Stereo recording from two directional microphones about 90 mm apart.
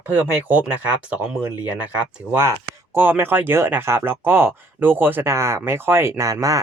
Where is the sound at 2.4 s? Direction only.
30° right (ahead or behind).